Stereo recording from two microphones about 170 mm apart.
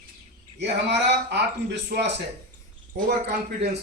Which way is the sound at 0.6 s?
90° right.